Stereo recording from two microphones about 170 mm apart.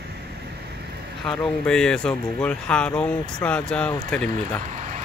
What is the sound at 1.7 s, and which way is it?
Speech, 5° left (ahead or behind).